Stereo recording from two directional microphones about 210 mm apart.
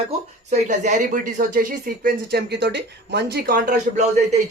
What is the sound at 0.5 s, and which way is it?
Speech, 35° right (ahead or behind).